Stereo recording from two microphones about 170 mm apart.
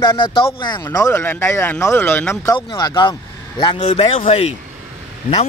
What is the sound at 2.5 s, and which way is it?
Speech, 25° left (ahead or behind).